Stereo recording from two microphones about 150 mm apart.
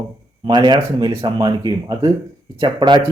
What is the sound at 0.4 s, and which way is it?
Speech, 30° right (ahead or behind).